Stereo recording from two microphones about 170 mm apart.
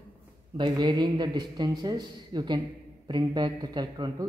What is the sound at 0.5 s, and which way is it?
Speech, 25° right (ahead or behind).